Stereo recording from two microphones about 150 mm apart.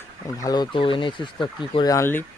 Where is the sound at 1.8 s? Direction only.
20° left (ahead or behind).